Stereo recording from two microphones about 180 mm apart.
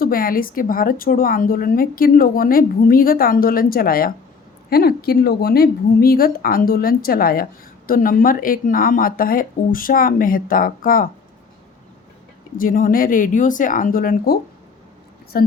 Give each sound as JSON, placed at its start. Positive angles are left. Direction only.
{"t": 0.0, "sound": "a woman's voice", "side_deg": 55}
{"t": 12.5, "sound": "a woman's voice", "side_deg": 50}
{"t": 15.3, "sound": "a woman's voice", "side_deg": 55}